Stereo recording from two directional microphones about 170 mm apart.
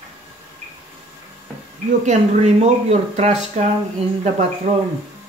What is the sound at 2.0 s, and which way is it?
Speech, 45° right (ahead or behind).